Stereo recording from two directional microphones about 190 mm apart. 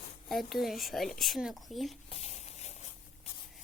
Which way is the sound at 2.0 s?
35° left (ahead or behind).